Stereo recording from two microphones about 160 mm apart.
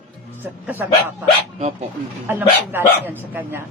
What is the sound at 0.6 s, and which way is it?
Speech, 10° right (ahead or behind).